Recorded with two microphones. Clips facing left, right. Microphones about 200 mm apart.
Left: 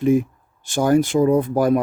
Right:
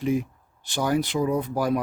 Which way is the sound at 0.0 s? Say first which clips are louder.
Left 8 dB; 50° left (ahead or behind).